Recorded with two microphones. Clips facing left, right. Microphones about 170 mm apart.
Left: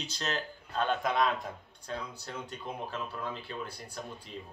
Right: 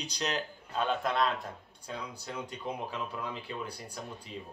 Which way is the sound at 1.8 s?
10° right (ahead or behind).